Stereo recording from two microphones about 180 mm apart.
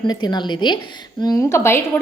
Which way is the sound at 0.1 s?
25° left (ahead or behind).